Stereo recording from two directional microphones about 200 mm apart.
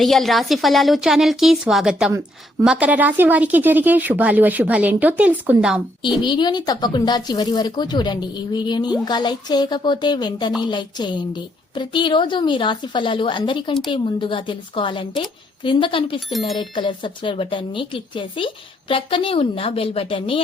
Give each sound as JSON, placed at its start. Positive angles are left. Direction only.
{"t": 0.0, "sound": "a woman's voice", "side_deg": 0}
{"t": 6.2, "sound": "speech", "side_deg": 20}